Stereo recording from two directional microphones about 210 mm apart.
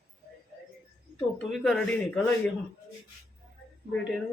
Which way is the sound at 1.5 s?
Centre (ahead or behind).